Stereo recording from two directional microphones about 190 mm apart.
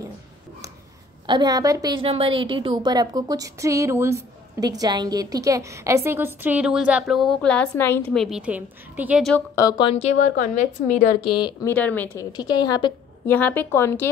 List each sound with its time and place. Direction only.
1.2 s a woman's voice: 25° right (ahead or behind)
9.6 s a woman's voice: 20° left (ahead or behind)
10.2 s a woman's voice: 40° left (ahead or behind)
11.1 s a woman's voice: 25° left (ahead or behind)
11.7 s speech: 10° left (ahead or behind)
12.3 s a woman's voice: 20° left (ahead or behind)
13.3 s speech: 10° left (ahead or behind)